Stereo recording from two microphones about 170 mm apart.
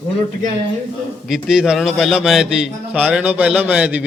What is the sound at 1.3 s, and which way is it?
A man's voice, centre (ahead or behind).